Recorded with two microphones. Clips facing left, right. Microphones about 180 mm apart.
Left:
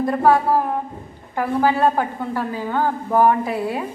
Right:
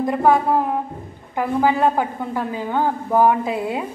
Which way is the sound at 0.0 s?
15° right (ahead or behind).